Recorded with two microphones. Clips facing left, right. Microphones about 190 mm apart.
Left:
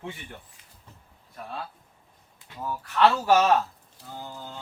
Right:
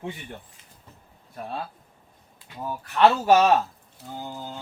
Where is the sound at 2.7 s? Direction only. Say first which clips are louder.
Right 2 dB; 15° right (ahead or behind).